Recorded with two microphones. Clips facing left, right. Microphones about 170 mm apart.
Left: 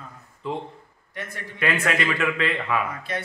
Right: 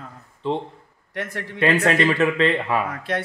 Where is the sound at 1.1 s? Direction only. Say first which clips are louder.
Right 6 dB; 80° right.